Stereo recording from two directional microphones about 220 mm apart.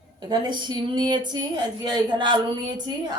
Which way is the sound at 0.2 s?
20° right (ahead or behind).